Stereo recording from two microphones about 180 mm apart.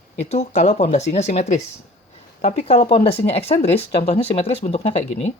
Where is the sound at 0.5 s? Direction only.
40° left (ahead or behind).